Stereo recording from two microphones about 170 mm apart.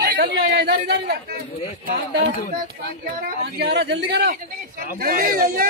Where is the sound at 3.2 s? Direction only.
75° right (ahead or behind).